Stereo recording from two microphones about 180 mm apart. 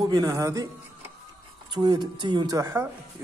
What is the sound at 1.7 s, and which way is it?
A man's voice, 25° right (ahead or behind).